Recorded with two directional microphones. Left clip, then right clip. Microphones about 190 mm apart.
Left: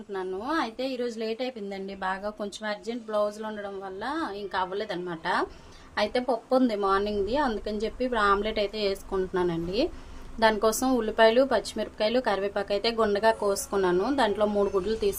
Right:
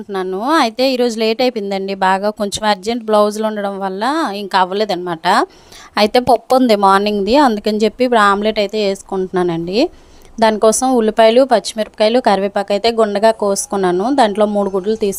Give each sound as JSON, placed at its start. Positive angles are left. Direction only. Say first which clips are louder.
{"t": 0.1, "sound": "speech", "louder": "right 14 dB", "side_deg": -45}